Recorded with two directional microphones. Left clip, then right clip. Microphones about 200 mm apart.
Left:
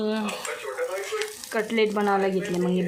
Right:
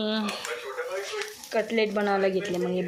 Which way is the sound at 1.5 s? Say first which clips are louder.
Left 1 dB; centre (ahead or behind).